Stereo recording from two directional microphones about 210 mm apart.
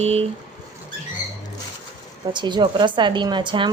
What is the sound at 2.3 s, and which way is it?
A woman's voice, 20° right (ahead or behind).